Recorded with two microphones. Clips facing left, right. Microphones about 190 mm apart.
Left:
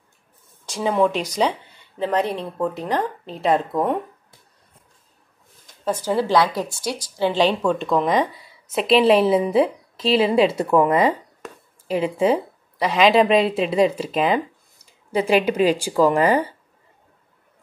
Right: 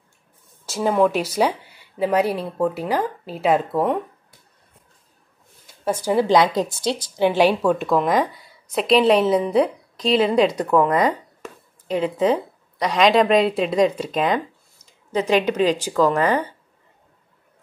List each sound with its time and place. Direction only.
0.7 s speech: 5° right (ahead or behind)
6.0 s a woman's voice: 15° right (ahead or behind)
7.2 s a woman's voice: 10° right (ahead or behind); by 16.3 s 10° left (ahead or behind)